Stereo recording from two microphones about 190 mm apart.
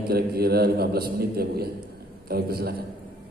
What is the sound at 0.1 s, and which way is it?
A man's voice, 55° right (ahead or behind).